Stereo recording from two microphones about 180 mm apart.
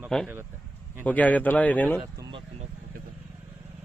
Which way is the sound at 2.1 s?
20° right (ahead or behind).